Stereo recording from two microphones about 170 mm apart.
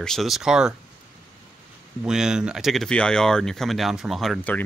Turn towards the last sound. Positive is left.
turn(degrees=5)  # may be behind; listen again after turning